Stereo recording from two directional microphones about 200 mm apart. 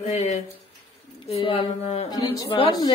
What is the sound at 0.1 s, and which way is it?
Speech, 35° left (ahead or behind).